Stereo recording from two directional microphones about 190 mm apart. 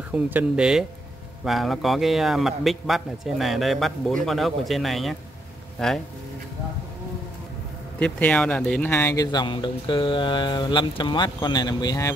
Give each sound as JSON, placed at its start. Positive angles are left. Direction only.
{"t": 0.1, "sound": "a man's voice", "side_deg": -10}
{"t": 8.0, "sound": "speech", "side_deg": 5}